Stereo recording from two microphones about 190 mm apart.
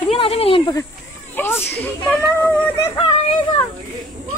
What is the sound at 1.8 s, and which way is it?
Speech, 10° left (ahead or behind).